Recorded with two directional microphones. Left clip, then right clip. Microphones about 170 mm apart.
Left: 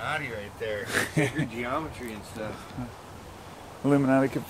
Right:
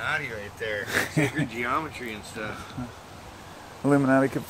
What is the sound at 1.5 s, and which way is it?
Speech, 10° left (ahead or behind).